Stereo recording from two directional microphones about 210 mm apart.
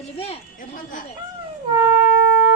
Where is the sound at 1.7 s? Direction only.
10° right (ahead or behind).